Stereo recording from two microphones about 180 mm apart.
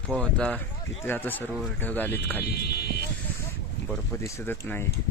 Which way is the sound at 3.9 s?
15° left (ahead or behind).